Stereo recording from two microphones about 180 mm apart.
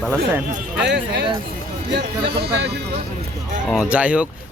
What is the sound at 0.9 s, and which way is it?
Speech, 75° right (ahead or behind).